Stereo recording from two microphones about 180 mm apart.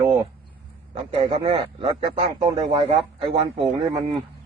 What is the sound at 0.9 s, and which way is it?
A man's voice, 30° right (ahead or behind).